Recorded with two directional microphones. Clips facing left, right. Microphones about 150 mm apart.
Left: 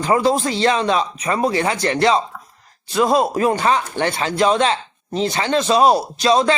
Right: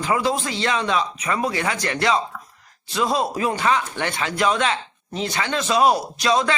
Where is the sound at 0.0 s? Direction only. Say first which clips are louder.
Left 5 dB; 35° left (ahead or behind).